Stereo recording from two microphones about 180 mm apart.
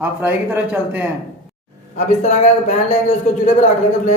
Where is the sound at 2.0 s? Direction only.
40° left (ahead or behind).